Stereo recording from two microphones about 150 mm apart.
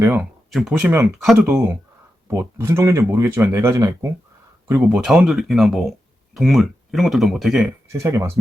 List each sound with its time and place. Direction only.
0.0 s speech: 10° right (ahead or behind)
4.7 s speech: 5° right (ahead or behind)
7.9 s speech: 20° right (ahead or behind)